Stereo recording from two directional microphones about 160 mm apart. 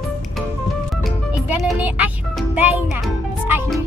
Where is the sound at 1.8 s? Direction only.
10° right (ahead or behind).